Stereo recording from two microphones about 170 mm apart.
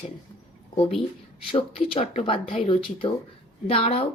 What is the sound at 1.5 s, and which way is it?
Speech, 35° left (ahead or behind).